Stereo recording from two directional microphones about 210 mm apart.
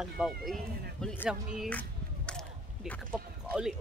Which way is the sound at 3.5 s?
Centre (ahead or behind).